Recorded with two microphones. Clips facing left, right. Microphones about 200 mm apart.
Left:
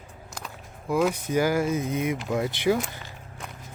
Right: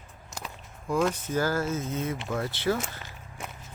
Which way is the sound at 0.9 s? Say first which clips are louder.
Left 3 dB; 10° left (ahead or behind).